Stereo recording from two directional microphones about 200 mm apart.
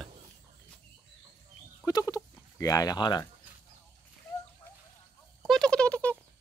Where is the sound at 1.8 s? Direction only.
20° left (ahead or behind).